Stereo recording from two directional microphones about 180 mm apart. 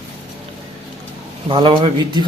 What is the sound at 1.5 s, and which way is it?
Speech, 30° right (ahead or behind).